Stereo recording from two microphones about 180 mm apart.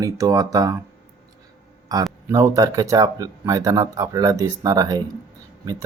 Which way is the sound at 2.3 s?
15° right (ahead or behind).